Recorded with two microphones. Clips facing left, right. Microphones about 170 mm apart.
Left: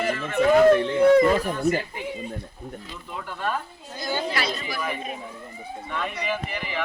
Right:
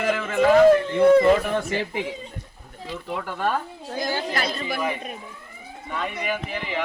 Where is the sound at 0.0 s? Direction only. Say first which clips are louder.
Right 2 dB; 90° right.